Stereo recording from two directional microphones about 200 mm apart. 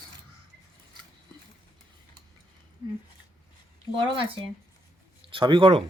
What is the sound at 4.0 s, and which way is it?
Speech, 25° right (ahead or behind).